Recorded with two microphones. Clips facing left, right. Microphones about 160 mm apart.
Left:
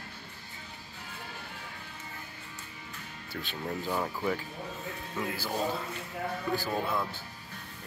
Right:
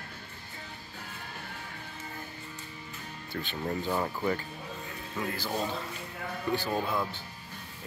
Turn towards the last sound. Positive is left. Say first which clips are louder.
# right 1 dB
turn(degrees=0)  # may be behind; listen again after turning